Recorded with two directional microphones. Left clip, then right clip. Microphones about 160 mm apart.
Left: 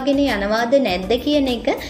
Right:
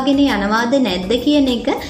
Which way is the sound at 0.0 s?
20° left (ahead or behind).